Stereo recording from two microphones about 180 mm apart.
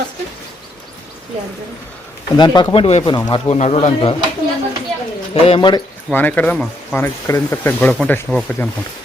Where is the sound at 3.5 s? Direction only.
35° left (ahead or behind).